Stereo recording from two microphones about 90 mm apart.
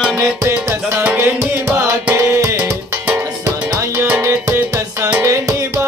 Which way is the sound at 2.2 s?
30° right (ahead or behind).